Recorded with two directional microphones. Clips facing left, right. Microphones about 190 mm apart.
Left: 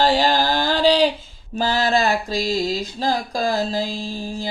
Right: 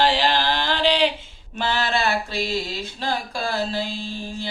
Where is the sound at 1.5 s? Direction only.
40° left (ahead or behind).